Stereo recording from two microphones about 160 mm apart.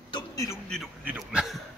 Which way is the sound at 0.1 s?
20° left (ahead or behind).